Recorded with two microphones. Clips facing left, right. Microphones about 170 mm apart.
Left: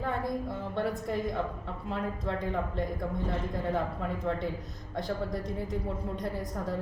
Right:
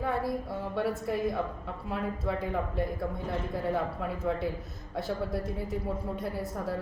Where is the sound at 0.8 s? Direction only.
5° right (ahead or behind).